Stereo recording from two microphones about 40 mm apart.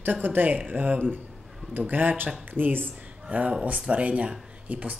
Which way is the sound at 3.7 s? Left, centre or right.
Right.